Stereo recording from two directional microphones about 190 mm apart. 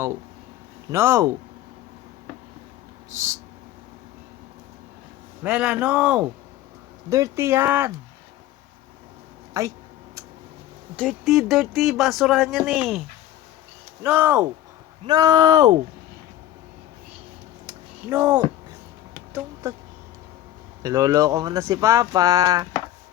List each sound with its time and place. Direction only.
0.9 s speech: 15° right (ahead or behind)
3.1 s speech: 15° right (ahead or behind)
5.4 s speech: 5° right (ahead or behind)
9.5 s speech: 15° right (ahead or behind)
10.9 s speech: centre (ahead or behind)
14.0 s speech: 10° right (ahead or behind)
18.1 s speech: 5° right (ahead or behind)
19.3 s a sound: 10° right (ahead or behind)
20.8 s speech: 15° right (ahead or behind)